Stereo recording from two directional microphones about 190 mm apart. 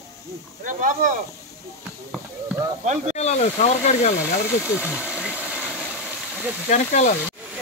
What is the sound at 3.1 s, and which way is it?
Speech, 35° left (ahead or behind).